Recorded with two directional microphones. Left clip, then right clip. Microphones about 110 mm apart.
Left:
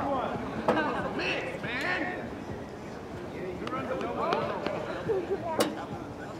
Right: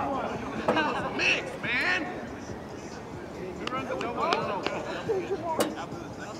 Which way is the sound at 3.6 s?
15° right (ahead or behind).